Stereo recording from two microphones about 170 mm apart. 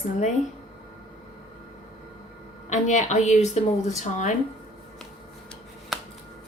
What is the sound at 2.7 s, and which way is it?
A woman's voice, 45° left (ahead or behind).